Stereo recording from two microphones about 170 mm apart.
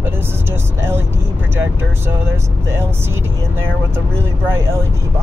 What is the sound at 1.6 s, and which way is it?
Speech, 15° right (ahead or behind).